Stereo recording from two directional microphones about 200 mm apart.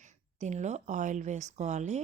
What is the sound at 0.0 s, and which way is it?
Speech, 35° right (ahead or behind).